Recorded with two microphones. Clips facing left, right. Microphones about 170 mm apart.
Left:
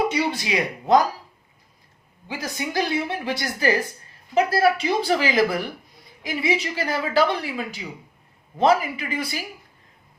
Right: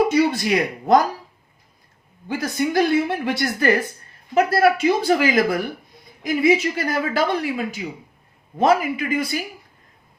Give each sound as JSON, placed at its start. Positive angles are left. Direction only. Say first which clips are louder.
{"t": 0.1, "sound": "speech", "louder": "right 6 dB", "side_deg": -50}
{"t": 2.2, "sound": "a woman's voice", "louder": "right 7 dB", "side_deg": -50}